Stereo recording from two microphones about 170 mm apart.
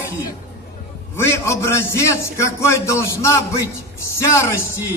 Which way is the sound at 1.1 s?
15° left (ahead or behind).